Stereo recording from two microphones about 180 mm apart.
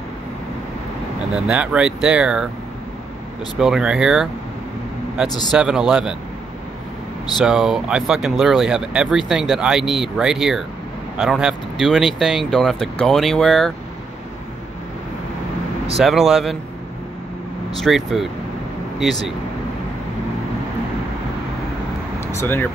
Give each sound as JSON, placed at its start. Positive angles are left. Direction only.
{"t": 1.3, "sound": "speech", "side_deg": -5}
{"t": 3.5, "sound": "speech", "side_deg": -5}
{"t": 5.5, "sound": "speech", "side_deg": -5}
{"t": 7.3, "sound": "speech", "side_deg": -5}
{"t": 16.0, "sound": "speech", "side_deg": 0}
{"t": 17.7, "sound": "speech", "side_deg": 0}
{"t": 22.3, "sound": "speech", "side_deg": 15}